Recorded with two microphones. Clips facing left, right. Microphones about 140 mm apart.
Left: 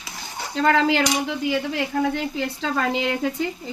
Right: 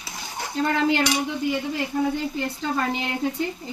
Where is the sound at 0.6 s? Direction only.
90° left.